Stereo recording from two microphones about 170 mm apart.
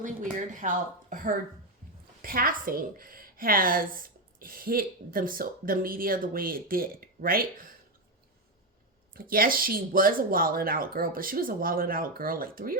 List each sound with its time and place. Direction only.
0.0 s a woman's voice: 50° right (ahead or behind)
9.1 s a woman's voice: 60° right (ahead or behind)